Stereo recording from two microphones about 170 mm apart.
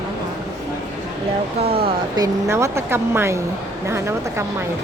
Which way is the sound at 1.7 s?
35° right (ahead or behind).